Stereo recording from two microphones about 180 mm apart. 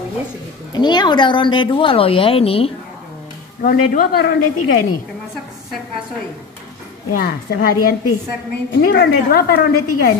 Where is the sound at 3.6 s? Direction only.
50° left (ahead or behind).